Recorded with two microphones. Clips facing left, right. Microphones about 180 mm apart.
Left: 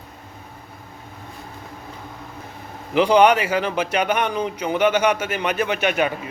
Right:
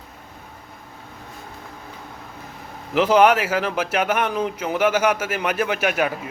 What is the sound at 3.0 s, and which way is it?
A man's voice, 5° right (ahead or behind).